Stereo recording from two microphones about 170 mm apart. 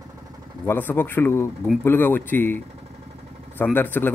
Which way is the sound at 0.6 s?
10° left (ahead or behind).